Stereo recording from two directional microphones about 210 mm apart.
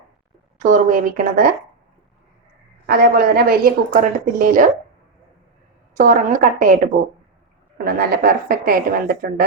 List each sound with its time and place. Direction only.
0.6 s speech: 40° right (ahead or behind)
2.8 s a woman's voice: 45° right (ahead or behind)
6.0 s speech: 40° right (ahead or behind)
7.9 s a woman's voice: 45° right (ahead or behind)